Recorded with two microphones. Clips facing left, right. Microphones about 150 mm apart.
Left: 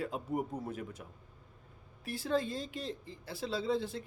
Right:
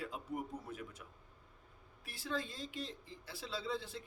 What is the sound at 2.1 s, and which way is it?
Speech, 45° left (ahead or behind).